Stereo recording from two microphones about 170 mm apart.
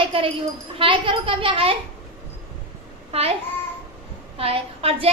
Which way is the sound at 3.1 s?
35° right (ahead or behind).